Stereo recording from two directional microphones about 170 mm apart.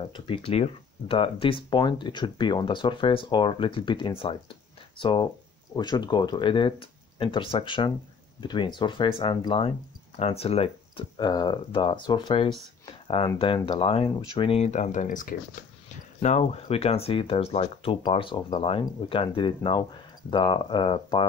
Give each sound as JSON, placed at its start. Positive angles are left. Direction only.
{"t": 0.0, "sound": "speech", "side_deg": 30}
{"t": 13.7, "sound": "speech", "side_deg": 30}
{"t": 16.2, "sound": "speech", "side_deg": 40}